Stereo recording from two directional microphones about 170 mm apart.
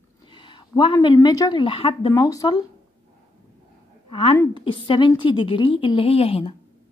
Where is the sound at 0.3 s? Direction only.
30° left (ahead or behind).